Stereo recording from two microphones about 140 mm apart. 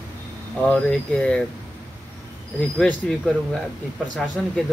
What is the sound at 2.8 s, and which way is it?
Speech, 5° left (ahead or behind).